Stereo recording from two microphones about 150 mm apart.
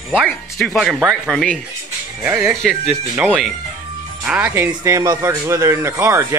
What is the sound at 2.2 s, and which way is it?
Speech, 15° right (ahead or behind).